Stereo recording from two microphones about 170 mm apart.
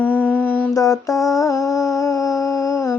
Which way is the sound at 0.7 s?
20° left (ahead or behind).